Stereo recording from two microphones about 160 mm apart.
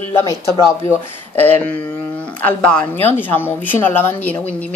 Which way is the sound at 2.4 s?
10° left (ahead or behind).